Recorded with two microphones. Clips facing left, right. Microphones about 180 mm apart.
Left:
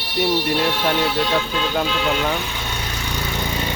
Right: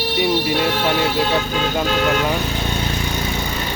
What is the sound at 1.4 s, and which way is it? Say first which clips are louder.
Speech: right 1 dB; 45° right (ahead or behind).